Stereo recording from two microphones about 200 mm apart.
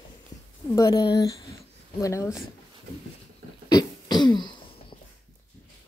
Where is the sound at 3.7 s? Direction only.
20° left (ahead or behind).